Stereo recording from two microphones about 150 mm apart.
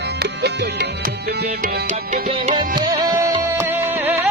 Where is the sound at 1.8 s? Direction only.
55° right (ahead or behind).